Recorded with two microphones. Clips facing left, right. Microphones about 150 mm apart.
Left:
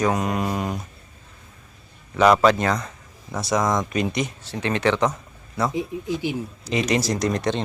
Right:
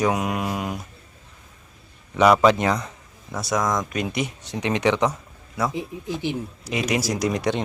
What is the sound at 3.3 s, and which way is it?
Speech, centre (ahead or behind).